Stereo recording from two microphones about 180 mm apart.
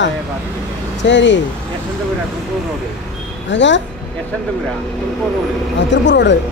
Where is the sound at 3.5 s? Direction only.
85° left.